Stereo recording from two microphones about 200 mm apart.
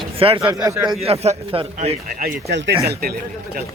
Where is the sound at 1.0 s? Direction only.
30° right (ahead or behind).